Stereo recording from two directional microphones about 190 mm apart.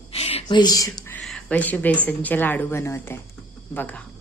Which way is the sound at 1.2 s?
5° left (ahead or behind).